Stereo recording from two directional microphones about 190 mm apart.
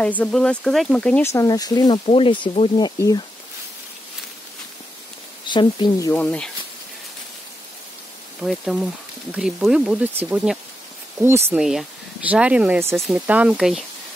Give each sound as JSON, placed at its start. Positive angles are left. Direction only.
{"t": 0.0, "sound": "speech", "side_deg": 5}
{"t": 1.3, "sound": "speech", "side_deg": 20}
{"t": 5.5, "sound": "speech", "side_deg": 25}
{"t": 6.2, "sound": "speech", "side_deg": 5}
{"t": 8.4, "sound": "speech", "side_deg": 0}